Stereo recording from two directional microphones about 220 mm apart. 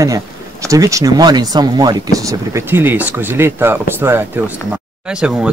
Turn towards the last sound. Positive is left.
turn(degrees=-5)  # may be behind; listen again after turning